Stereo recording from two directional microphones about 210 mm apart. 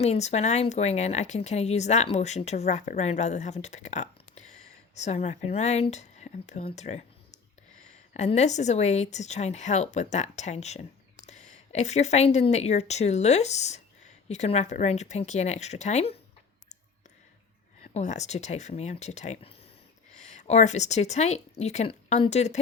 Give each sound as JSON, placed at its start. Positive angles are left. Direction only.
{"t": 0.0, "sound": "speech", "side_deg": 30}
{"t": 17.9, "sound": "speech", "side_deg": 35}